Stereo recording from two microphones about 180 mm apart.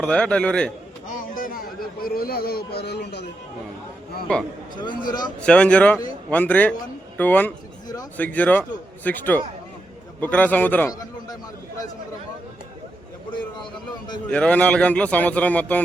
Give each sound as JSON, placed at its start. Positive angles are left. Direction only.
{"t": 0.0, "sound": "a man's voice", "side_deg": 5}
{"t": 1.0, "sound": "a sound", "side_deg": 45}
{"t": 4.3, "sound": "a man's voice", "side_deg": 5}
{"t": 4.7, "sound": "speech", "side_deg": 25}
{"t": 5.4, "sound": "a man's voice", "side_deg": 5}
{"t": 14.3, "sound": "a man's voice", "side_deg": 5}